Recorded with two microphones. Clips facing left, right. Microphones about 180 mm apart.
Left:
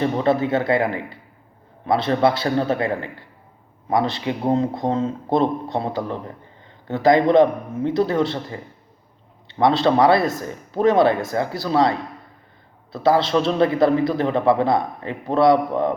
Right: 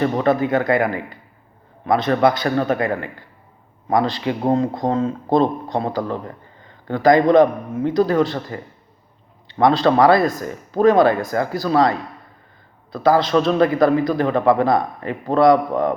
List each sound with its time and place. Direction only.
0.0 s a man's voice: 25° left (ahead or behind)